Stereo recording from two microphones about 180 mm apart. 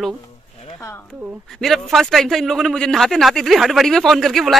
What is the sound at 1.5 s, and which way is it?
A woman's voice, centre (ahead or behind).